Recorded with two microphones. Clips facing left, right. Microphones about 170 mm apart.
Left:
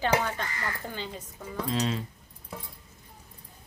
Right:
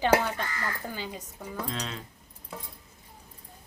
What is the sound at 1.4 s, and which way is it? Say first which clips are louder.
Speech: left 6 dB; centre (ahead or behind).